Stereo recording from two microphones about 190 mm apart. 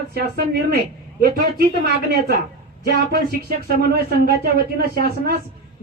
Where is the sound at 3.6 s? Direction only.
55° right (ahead or behind).